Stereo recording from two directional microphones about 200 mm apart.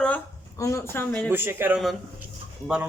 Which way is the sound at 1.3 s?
10° right (ahead or behind).